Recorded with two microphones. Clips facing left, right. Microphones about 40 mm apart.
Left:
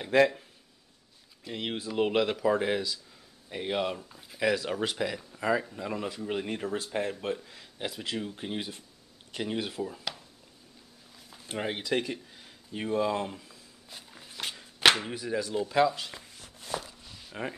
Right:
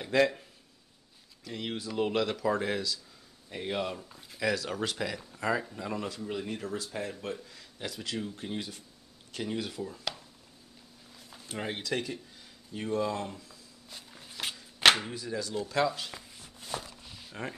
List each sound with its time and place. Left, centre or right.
0.0 s speech: centre
1.4 s speech: left
4.0 s speech: centre
4.4 s speech: centre
6.2 s speech: left
11.5 s speech: centre
13.8 s walk: centre
15.0 s speech: left
15.8 s speech: centre
17.3 s speech: centre